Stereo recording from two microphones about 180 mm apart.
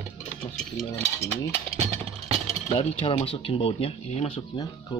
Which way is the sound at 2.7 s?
30° left (ahead or behind).